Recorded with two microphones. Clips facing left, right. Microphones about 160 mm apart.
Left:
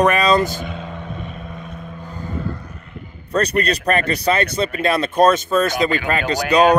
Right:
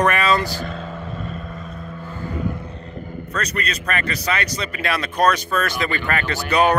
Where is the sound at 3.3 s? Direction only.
30° left (ahead or behind).